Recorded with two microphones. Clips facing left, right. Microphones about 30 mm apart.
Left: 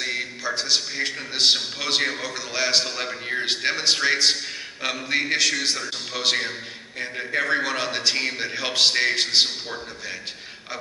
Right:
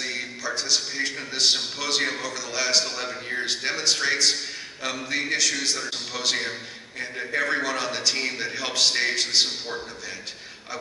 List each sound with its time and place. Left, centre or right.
0.0 s a man's voice: left